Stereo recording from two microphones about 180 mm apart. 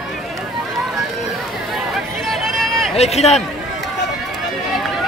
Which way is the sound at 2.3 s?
Centre (ahead or behind).